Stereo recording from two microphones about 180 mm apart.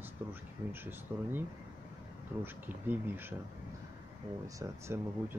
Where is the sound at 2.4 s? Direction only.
10° right (ahead or behind).